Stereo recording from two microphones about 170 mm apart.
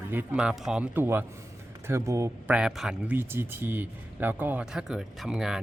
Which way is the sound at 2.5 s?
5° right (ahead or behind).